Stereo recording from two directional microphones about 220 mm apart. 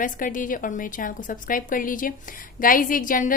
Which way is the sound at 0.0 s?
35° left (ahead or behind).